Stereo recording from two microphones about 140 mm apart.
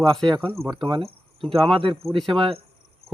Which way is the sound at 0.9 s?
35° right (ahead or behind).